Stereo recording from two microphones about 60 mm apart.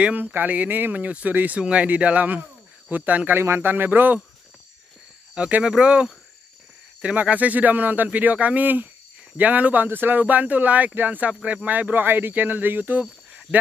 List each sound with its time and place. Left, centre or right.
0.0 s speech: right
3.3 s speech: right
5.3 s speech: centre
13.5 s a sound: centre